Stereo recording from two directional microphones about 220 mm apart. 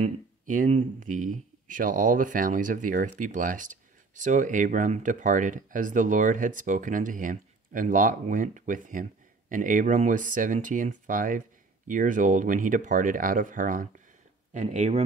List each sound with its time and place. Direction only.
0.0 s speech: 35° right (ahead or behind)